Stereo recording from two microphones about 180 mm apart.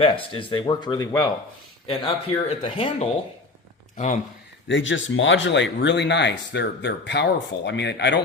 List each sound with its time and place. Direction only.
0.0 s speech: 30° left (ahead or behind)
1.9 s speech: 35° left (ahead or behind)
3.9 s speech: 45° left (ahead or behind)
4.7 s speech: 90° left